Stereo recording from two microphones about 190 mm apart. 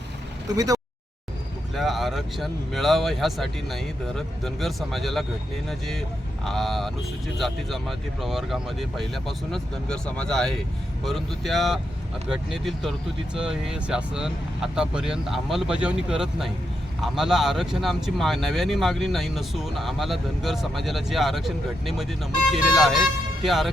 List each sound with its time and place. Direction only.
0.5 s speech: 20° right (ahead or behind)
1.7 s speech: centre (ahead or behind)
6.4 s speech: centre (ahead or behind)